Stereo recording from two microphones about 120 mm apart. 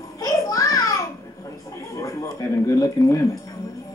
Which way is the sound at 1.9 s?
25° left (ahead or behind).